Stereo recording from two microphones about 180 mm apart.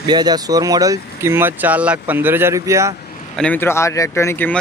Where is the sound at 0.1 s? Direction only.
20° right (ahead or behind).